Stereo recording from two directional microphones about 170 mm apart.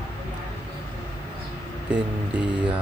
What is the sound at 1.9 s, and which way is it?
Speech, 5° right (ahead or behind).